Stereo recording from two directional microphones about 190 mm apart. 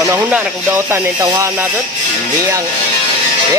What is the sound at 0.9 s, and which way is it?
Speech, 15° right (ahead or behind).